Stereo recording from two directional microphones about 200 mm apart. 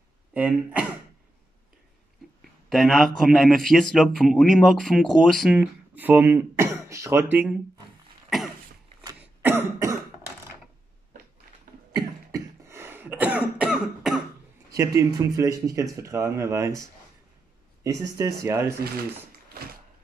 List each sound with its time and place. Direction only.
0.3 s speech: 5° right (ahead or behind)
2.7 s speech: centre (ahead or behind)
9.2 s cough: 10° right (ahead or behind)
11.9 s cough: 15° right (ahead or behind); by 14.2 s centre (ahead or behind)
14.7 s speech: 15° right (ahead or behind)
18.4 s speech: 15° right (ahead or behind)